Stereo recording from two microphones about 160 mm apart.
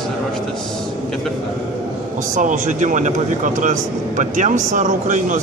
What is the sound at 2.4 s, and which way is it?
A man's voice, 50° right (ahead or behind).